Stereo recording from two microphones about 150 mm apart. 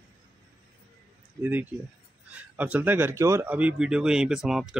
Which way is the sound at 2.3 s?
10° right (ahead or behind).